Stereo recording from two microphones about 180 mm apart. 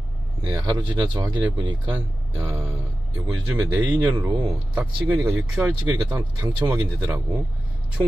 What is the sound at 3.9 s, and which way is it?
Speech, 20° right (ahead or behind).